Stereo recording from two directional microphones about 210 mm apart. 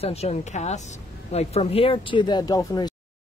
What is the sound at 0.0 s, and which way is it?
Speech, 30° left (ahead or behind).